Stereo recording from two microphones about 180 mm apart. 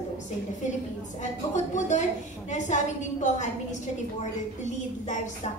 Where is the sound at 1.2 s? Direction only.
40° left (ahead or behind).